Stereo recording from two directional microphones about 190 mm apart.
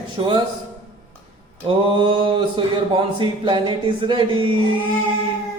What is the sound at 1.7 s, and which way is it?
Speech, 25° right (ahead or behind).